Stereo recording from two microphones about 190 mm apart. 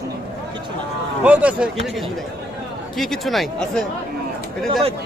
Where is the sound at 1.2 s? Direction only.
5° right (ahead or behind).